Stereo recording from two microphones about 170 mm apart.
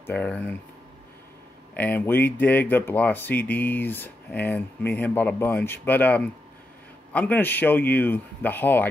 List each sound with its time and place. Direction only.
0.0 s speech: 10° left (ahead or behind)
1.7 s speech: 10° left (ahead or behind)